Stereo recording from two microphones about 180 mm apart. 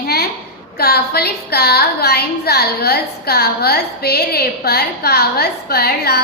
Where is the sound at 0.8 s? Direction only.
60° left (ahead or behind).